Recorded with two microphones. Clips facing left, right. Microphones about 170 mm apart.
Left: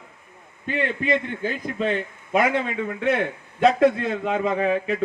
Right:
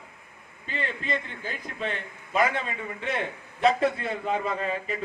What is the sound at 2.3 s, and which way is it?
Speech, 70° left (ahead or behind).